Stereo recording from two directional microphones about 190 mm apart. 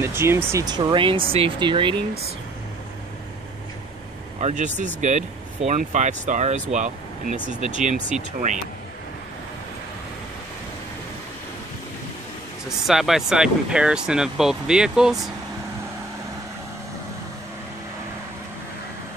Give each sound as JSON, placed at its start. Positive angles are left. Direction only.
{"t": 0.0, "sound": "speech", "side_deg": -15}
{"t": 4.4, "sound": "speech", "side_deg": -35}
{"t": 12.6, "sound": "speech", "side_deg": 0}